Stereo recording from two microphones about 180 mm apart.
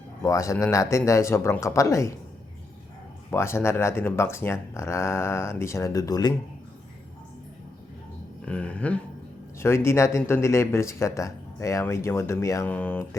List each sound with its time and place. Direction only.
0.2 s speech: 15° left (ahead or behind)
3.2 s speech: 15° left (ahead or behind)
8.4 s speech: 5° left (ahead or behind)